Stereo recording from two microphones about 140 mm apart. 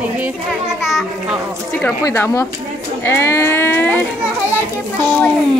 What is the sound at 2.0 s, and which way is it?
Speech, 20° left (ahead or behind).